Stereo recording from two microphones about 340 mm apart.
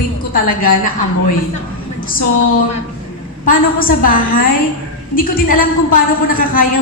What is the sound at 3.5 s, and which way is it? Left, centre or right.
A woman's voice, left.